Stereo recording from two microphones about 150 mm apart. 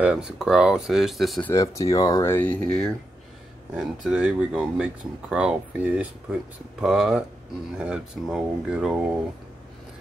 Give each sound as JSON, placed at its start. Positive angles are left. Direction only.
{"t": 0.0, "sound": "speech", "side_deg": -5}
{"t": 1.5, "sound": "speech", "side_deg": 20}
{"t": 3.7, "sound": "speech", "side_deg": -5}